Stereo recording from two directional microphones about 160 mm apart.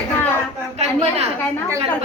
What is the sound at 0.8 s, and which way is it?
Speech, 40° right (ahead or behind).